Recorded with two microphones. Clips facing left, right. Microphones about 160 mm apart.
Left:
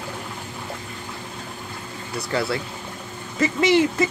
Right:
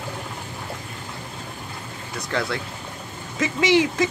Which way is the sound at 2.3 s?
5° left (ahead or behind).